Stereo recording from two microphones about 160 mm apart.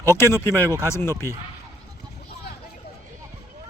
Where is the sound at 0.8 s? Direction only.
15° left (ahead or behind).